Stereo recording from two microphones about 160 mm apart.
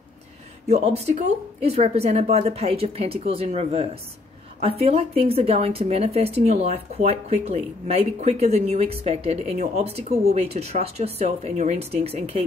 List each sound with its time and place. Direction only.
0.7 s a woman's voice: 40° right (ahead or behind)